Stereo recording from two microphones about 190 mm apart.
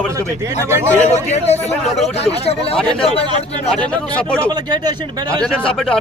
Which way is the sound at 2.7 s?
Centre (ahead or behind).